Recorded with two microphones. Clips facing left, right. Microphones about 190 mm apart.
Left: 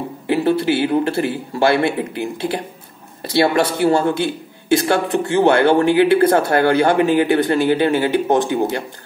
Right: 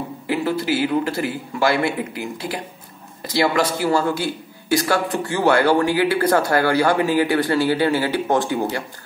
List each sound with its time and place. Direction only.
0.3 s a man's voice: 30° left (ahead or behind)